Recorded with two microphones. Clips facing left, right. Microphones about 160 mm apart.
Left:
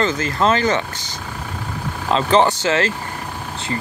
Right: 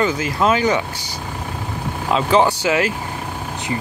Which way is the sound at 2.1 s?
5° right (ahead or behind).